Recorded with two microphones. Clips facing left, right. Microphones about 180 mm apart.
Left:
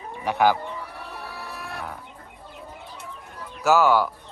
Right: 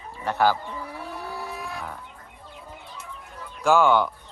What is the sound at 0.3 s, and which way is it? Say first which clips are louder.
Speech: left 1 dB; 15° left (ahead or behind).